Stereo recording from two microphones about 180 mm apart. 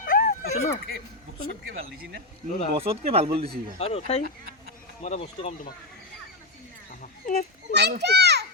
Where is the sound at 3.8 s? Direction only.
35° left (ahead or behind).